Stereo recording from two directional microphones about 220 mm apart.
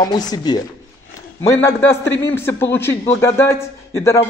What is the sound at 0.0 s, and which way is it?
A man's voice, 20° left (ahead or behind).